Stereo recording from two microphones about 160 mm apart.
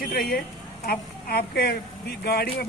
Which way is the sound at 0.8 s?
80° left.